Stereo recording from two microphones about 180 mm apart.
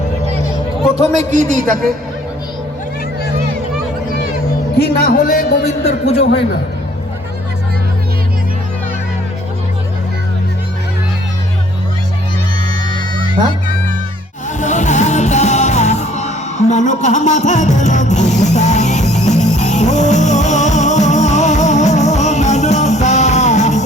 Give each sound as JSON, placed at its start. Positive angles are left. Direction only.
{"t": 0.9, "sound": "a man's voice", "side_deg": -40}
{"t": 4.8, "sound": "a man's voice", "side_deg": 60}
{"t": 5.8, "sound": "a man's voice", "side_deg": 35}
{"t": 14.6, "sound": "music", "side_deg": 40}